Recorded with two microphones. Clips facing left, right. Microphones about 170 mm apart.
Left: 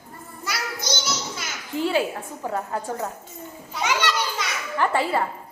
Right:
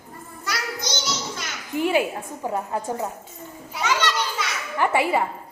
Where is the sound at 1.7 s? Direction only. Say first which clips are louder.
Right 2 dB; 15° right (ahead or behind).